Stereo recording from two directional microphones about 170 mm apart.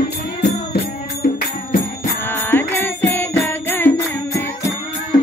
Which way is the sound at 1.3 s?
55° left (ahead or behind).